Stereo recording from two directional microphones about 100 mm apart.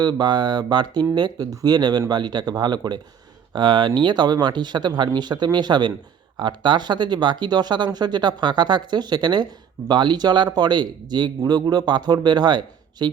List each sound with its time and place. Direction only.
0.0 s speech: 45° right (ahead or behind)